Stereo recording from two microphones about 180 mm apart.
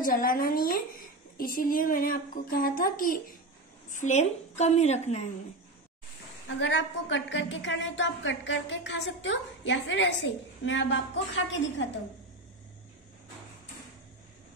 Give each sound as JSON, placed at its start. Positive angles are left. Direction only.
{"t": 0.0, "sound": "a woman's voice", "side_deg": 55}
{"t": 6.4, "sound": "a woman's voice", "side_deg": 90}